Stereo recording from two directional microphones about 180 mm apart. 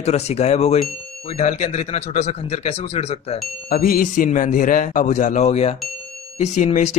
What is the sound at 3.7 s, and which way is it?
A man's voice, 55° left (ahead or behind).